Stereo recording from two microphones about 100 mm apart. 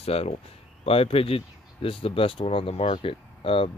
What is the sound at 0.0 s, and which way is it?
Speech, 90° left.